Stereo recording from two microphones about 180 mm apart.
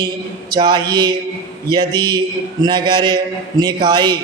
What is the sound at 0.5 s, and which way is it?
A man's voice, 25° right (ahead or behind).